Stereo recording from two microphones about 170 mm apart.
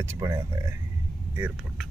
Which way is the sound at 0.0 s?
15° right (ahead or behind).